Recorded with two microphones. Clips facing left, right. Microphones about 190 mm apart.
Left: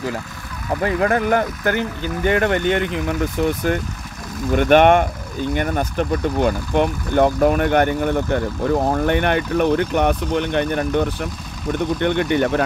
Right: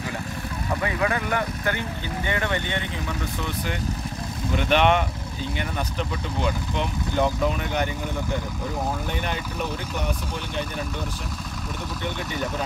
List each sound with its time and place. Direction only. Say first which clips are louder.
0.8 s speech: left 8 dB; 45° left (ahead or behind); by 12.6 s 70° left (ahead or behind)